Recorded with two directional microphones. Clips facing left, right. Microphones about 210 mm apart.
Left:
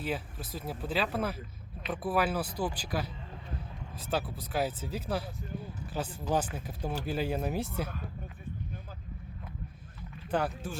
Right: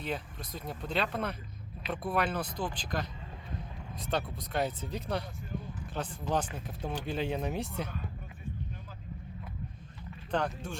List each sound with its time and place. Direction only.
0.0 s speech: 5° left (ahead or behind)
10.3 s speech: 5° left (ahead or behind)